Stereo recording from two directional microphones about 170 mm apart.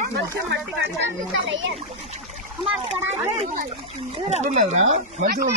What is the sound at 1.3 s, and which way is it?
Speech, 90° right.